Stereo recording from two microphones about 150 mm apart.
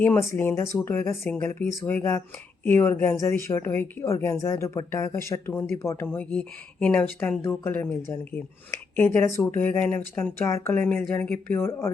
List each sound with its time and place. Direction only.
0.0 s speech: 15° left (ahead or behind)
9.0 s speech: 20° left (ahead or behind)